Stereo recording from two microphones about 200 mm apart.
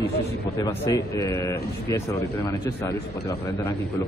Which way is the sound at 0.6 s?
15° left (ahead or behind).